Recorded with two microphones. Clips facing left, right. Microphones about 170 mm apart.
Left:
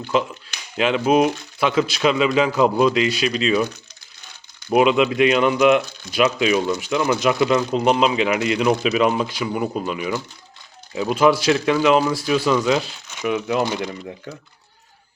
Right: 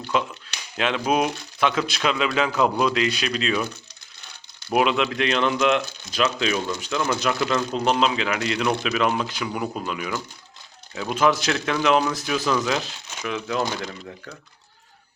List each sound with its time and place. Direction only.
0.8 s speech: 5° left (ahead or behind)
4.7 s speech: 5° left (ahead or behind)
11.1 s speech: 5° left (ahead or behind)